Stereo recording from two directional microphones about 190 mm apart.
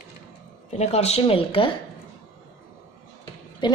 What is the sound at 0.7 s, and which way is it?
A woman's voice, 35° left (ahead or behind).